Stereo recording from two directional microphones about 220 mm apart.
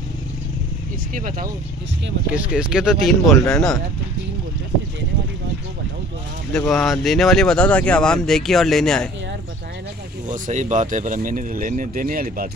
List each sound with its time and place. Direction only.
1.1 s speech: 40° right (ahead or behind)
2.3 s speech: 5° right (ahead or behind)
6.5 s speech: 5° left (ahead or behind)
10.2 s speech: 35° right (ahead or behind)